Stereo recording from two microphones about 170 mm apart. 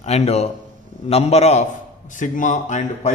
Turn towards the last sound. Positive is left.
turn(degrees=45)  # may be behind; listen again after turning